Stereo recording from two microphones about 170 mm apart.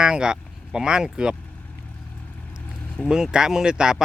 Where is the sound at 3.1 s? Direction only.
5° right (ahead or behind).